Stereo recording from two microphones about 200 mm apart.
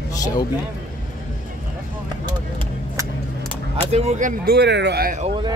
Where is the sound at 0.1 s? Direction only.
20° left (ahead or behind).